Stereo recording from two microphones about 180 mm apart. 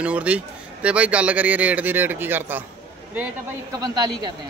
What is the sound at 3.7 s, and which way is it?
Speech, 20° right (ahead or behind).